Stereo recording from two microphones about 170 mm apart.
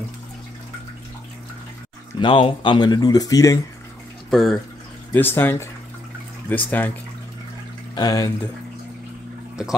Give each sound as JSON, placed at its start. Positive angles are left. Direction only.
{"t": 2.1, "sound": "speech", "side_deg": 30}
{"t": 4.3, "sound": "speech", "side_deg": 0}
{"t": 5.1, "sound": "speech", "side_deg": 10}
{"t": 7.9, "sound": "speech", "side_deg": 20}